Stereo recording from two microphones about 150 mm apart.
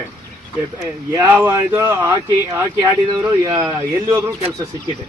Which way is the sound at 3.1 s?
20° right (ahead or behind).